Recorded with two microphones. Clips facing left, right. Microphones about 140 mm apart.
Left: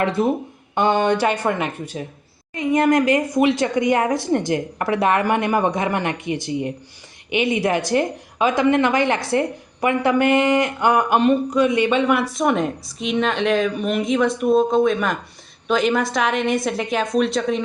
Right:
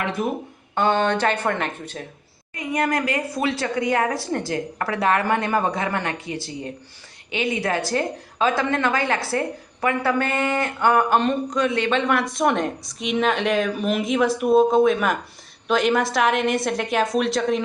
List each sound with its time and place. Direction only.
0.2 s speech: 30° left (ahead or behind)
0.8 s speech: 15° left (ahead or behind)
2.6 s speech: 20° left (ahead or behind); by 17.6 s centre (ahead or behind)